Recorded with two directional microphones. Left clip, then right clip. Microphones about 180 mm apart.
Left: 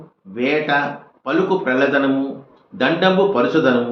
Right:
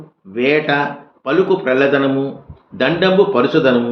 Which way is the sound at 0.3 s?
60° right (ahead or behind).